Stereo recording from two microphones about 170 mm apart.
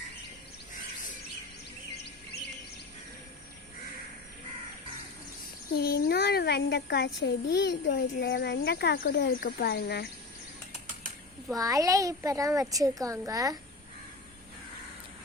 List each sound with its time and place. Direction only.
5.7 s a child's voice: 65° left (ahead or behind)
11.4 s a woman's voice: 20° right (ahead or behind)